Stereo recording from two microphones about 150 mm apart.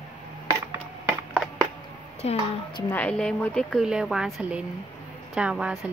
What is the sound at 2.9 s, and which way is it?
A woman's voice, 10° left (ahead or behind).